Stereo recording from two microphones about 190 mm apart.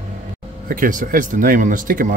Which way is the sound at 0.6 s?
45° right (ahead or behind).